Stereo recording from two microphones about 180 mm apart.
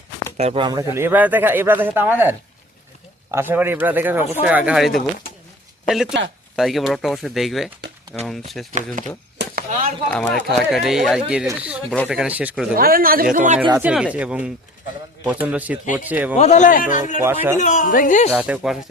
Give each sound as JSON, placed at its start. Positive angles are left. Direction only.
{"t": 0.3, "sound": "speech", "side_deg": -35}
{"t": 3.3, "sound": "speech", "side_deg": -10}
{"t": 9.0, "sound": "a man's voice", "side_deg": -50}
{"t": 9.4, "sound": "chop", "side_deg": -70}
{"t": 10.1, "sound": "speech", "side_deg": 5}
{"t": 12.7, "sound": "a man's voice", "side_deg": -55}
{"t": 13.7, "sound": "speech", "side_deg": -5}
{"t": 16.3, "sound": "speech", "side_deg": 40}
{"t": 17.2, "sound": "speech", "side_deg": -15}
{"t": 17.6, "sound": "speech", "side_deg": 45}
{"t": 18.3, "sound": "speech", "side_deg": -10}